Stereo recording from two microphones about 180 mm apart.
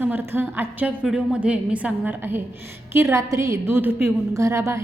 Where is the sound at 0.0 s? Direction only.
10° right (ahead or behind).